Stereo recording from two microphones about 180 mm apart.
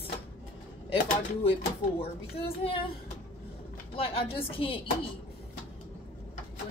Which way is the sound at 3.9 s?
30° left (ahead or behind).